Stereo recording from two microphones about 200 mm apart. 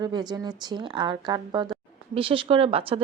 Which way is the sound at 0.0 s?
20° right (ahead or behind).